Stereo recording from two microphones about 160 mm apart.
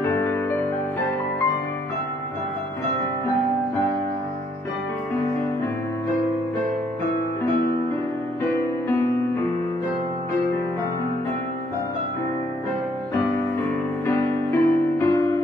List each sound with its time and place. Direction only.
0.0 s music: 15° left (ahead or behind)
8.5 s music: 15° left (ahead or behind)
14.0 s music: 15° left (ahead or behind)